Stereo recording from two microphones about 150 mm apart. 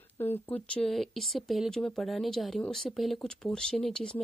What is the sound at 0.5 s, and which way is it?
Speech, 10° left (ahead or behind).